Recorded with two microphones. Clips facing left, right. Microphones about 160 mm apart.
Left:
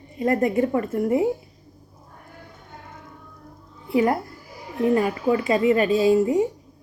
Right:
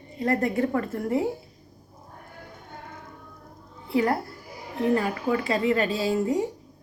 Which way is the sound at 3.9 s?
20° left (ahead or behind).